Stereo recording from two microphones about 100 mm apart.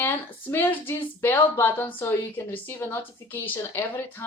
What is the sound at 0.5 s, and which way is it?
Speech, 20° left (ahead or behind).